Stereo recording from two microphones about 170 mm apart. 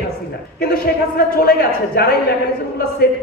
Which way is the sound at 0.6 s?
60° left (ahead or behind).